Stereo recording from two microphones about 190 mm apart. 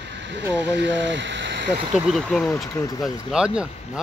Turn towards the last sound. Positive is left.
turn(degrees=-5)  # may be behind; listen again after turning